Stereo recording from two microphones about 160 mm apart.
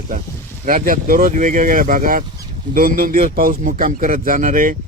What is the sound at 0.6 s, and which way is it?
A man's voice, 60° right (ahead or behind).